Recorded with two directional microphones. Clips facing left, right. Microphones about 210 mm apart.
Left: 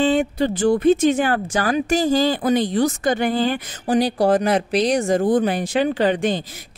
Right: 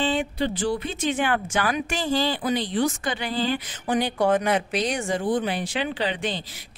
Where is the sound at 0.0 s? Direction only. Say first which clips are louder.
Left 6 dB; 45° left (ahead or behind).